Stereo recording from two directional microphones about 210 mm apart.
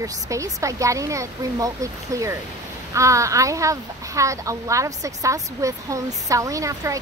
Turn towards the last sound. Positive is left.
turn(degrees=-15)  # may be behind; listen again after turning